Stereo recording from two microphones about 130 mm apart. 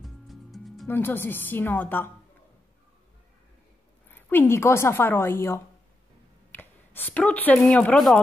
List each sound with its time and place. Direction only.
0.0 s music: centre (ahead or behind)
0.8 s a woman's voice: 15° left (ahead or behind)
4.1 s a woman's voice: 15° left (ahead or behind)